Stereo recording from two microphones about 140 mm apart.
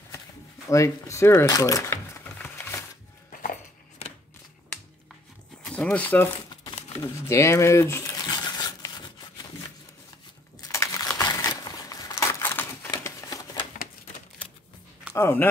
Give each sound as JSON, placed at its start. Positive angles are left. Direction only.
{"t": 0.7, "sound": "speech", "side_deg": 20}
{"t": 2.3, "sound": "a sound", "side_deg": 15}
{"t": 4.0, "sound": "scissors", "side_deg": 45}
{"t": 5.7, "sound": "speech", "side_deg": 5}
{"t": 7.0, "sound": "a sound", "side_deg": 20}
{"t": 10.7, "sound": "crushing", "side_deg": 20}
{"t": 12.9, "sound": "a sound", "side_deg": 25}
{"t": 13.7, "sound": "typewriter", "side_deg": 70}
{"t": 15.1, "sound": "speech", "side_deg": 20}